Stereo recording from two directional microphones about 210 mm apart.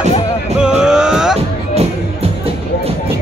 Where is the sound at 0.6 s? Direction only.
5° right (ahead or behind).